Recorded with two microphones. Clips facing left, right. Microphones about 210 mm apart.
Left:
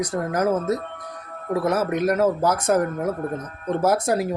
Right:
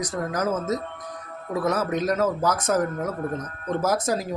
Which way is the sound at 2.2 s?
10° left (ahead or behind).